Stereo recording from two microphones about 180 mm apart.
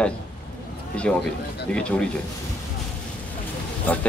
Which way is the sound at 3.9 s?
10° left (ahead or behind).